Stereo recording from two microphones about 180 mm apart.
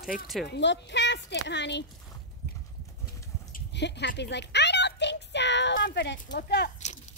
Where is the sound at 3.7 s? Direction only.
70° left (ahead or behind).